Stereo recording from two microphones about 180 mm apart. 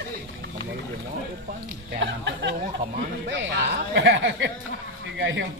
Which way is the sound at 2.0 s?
90° right.